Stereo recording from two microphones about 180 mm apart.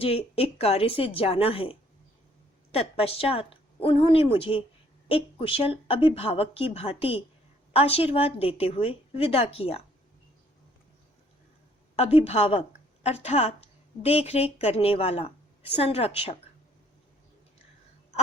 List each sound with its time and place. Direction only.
0.0 s a woman's voice: 35° left (ahead or behind)
2.7 s a woman's voice: 35° left (ahead or behind)
11.9 s a woman's voice: 35° left (ahead or behind)